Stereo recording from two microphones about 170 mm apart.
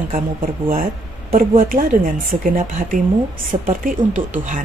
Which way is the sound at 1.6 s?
55° right (ahead or behind).